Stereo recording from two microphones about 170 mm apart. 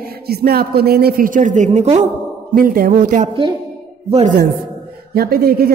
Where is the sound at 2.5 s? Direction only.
60° right (ahead or behind).